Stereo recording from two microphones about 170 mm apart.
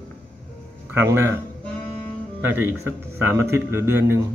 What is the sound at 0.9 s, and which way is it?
Speech, 15° right (ahead or behind).